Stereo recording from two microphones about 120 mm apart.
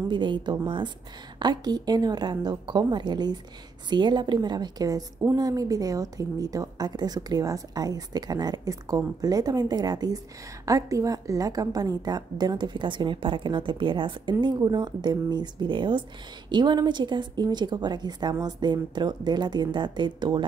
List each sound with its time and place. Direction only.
0.1 s a woman's voice: 40° right (ahead or behind)